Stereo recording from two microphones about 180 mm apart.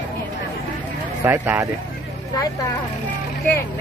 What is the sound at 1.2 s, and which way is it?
Speech, 10° right (ahead or behind).